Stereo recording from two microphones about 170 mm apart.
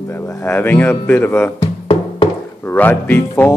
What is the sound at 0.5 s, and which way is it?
Music, 10° left (ahead or behind).